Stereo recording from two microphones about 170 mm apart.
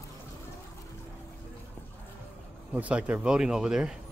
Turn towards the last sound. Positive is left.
turn(degrees=-5)  # may be behind; listen again after turning